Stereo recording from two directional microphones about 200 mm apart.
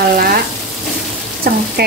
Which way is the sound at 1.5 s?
45° right (ahead or behind).